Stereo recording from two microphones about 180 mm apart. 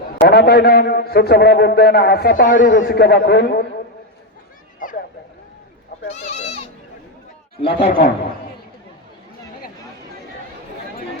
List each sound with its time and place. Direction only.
0.3 s a man's voice: 60° left (ahead or behind)
2.8 s a man's voice: 60° left (ahead or behind)
4.8 s a sound: 50° left (ahead or behind)
6.1 s goat: 35° left (ahead or behind)
7.6 s speech: 30° left (ahead or behind)